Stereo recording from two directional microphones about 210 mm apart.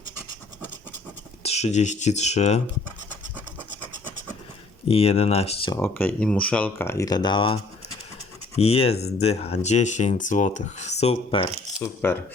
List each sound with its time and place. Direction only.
1.5 s speech: 30° left (ahead or behind)
4.9 s speech: 30° left (ahead or behind)
5.8 s speech: 10° left (ahead or behind); by 11.4 s 25° left (ahead or behind)
11.8 s speech: 10° left (ahead or behind)